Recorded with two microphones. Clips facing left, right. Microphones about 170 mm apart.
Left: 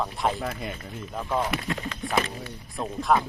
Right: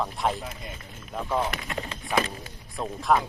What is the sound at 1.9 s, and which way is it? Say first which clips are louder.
Speech: even; 30° right (ahead or behind).